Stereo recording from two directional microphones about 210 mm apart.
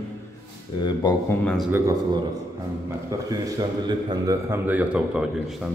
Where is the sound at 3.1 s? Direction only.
15° right (ahead or behind).